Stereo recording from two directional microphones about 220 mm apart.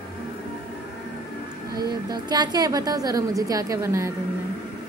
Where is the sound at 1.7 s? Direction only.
20° right (ahead or behind).